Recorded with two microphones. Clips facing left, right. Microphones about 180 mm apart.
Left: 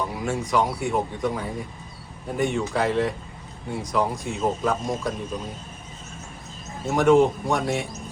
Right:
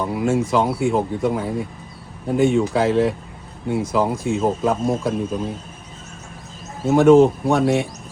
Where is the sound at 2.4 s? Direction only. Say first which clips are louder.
Right 6 dB; 25° right (ahead or behind).